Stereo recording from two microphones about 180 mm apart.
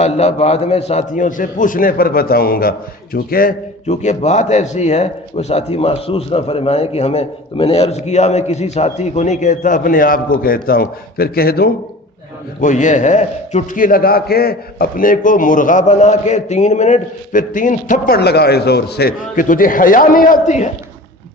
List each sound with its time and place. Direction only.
0.0 s a man's voice: 35° left (ahead or behind); by 3.5 s 55° left (ahead or behind)
3.8 s a man's voice: 40° left (ahead or behind); by 11.7 s 60° left (ahead or behind)
12.5 s a man's voice: 45° left (ahead or behind)